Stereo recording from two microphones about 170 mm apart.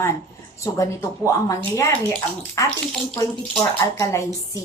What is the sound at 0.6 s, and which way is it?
A woman's voice, 15° left (ahead or behind).